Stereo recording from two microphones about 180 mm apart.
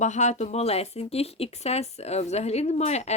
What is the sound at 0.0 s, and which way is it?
Speech, 40° left (ahead or behind).